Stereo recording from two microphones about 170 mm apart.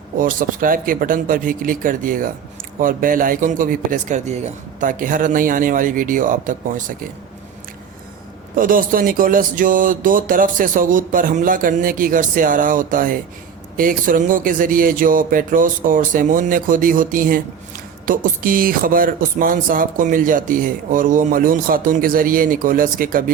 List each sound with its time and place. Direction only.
0.2 s speech: 55° right (ahead or behind)
8.5 s speech: 55° right (ahead or behind)